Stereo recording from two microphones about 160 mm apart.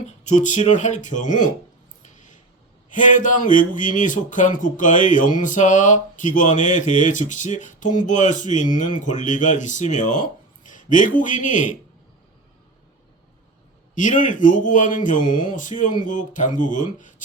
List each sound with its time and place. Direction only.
0.3 s speech: 50° left (ahead or behind)
2.9 s speech: 55° left (ahead or behind)
13.9 s speech: 55° left (ahead or behind)